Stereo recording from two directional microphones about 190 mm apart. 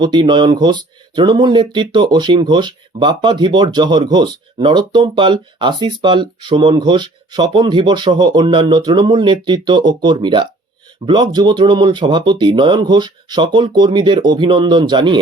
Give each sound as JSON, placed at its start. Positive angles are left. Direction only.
{"t": 0.0, "sound": "speech", "side_deg": -25}